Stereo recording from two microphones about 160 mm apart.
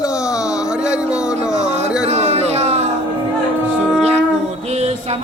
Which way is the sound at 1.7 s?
45° right (ahead or behind).